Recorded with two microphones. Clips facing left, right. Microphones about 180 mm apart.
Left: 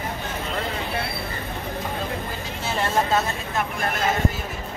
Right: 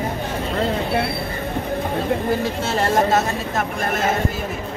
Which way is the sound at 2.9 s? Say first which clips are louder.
Right 3 dB; 45° right (ahead or behind).